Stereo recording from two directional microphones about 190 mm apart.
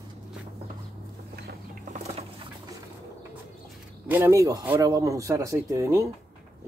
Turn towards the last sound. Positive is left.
turn(degrees=-15)  # may be behind; listen again after turning